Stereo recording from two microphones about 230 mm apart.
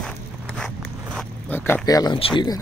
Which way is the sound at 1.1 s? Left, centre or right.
Centre.